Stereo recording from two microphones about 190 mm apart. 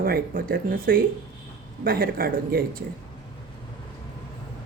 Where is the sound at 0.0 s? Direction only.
50° right (ahead or behind).